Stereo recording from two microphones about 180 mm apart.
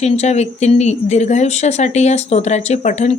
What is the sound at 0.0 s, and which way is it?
Speech, 40° left (ahead or behind).